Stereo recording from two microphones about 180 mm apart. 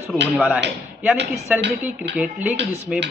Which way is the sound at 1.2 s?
70° right (ahead or behind).